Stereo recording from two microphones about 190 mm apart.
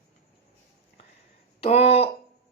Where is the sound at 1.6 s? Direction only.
30° left (ahead or behind).